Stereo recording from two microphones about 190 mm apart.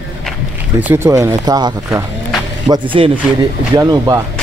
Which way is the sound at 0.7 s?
10° right (ahead or behind).